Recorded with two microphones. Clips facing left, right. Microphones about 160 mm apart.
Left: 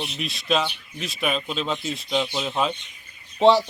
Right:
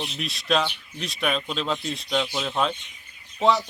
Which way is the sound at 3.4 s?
30° left (ahead or behind).